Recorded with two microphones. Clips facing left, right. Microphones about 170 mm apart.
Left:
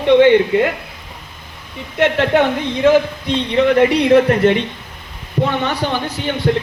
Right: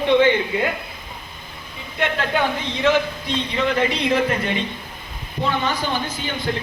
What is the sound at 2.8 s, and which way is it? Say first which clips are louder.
A man's voice: left 6 dB; 55° left (ahead or behind).